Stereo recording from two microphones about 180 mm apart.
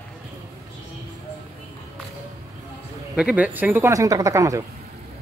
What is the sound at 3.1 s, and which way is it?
Speech, 5° right (ahead or behind).